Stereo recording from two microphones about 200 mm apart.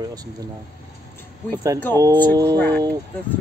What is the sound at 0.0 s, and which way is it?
Speech, 20° right (ahead or behind).